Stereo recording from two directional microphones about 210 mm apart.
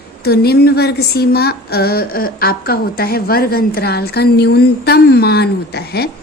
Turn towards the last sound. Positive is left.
turn(degrees=50)  # may be behind; listen again after turning